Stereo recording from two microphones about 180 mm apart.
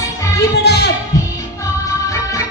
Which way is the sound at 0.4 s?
70° left (ahead or behind).